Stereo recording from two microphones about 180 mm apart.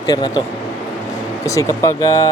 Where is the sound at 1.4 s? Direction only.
15° left (ahead or behind).